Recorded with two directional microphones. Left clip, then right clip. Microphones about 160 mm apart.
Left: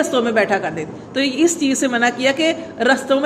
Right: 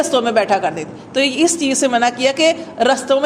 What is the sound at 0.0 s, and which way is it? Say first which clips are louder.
A woman's voice: right 2 dB; 35° right (ahead or behind).